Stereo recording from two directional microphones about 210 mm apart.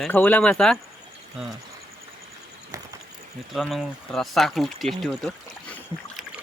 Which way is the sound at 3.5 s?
Centre (ahead or behind).